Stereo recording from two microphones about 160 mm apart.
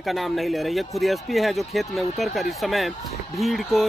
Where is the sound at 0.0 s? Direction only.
Centre (ahead or behind).